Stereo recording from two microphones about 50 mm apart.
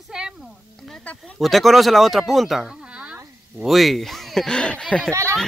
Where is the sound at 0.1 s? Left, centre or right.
Centre.